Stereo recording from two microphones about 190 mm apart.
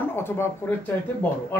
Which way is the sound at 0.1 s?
15° left (ahead or behind).